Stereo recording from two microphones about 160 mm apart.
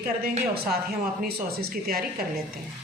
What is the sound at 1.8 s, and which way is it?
Speech, 70° right (ahead or behind).